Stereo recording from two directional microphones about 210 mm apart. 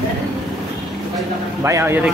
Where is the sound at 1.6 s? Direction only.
10° right (ahead or behind).